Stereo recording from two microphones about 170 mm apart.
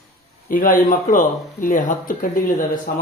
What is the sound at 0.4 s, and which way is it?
A man's voice, 55° left (ahead or behind).